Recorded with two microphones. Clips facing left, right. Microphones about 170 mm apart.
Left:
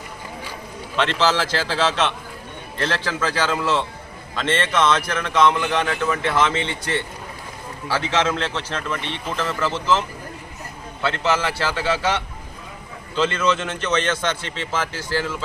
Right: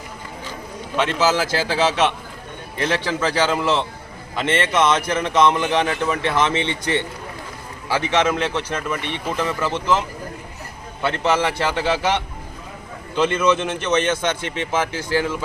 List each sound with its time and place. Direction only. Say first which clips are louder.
0.9 s a man's voice: right 1 dB; 10° right (ahead or behind)
11.0 s a man's voice: right 2 dB; 15° right (ahead or behind)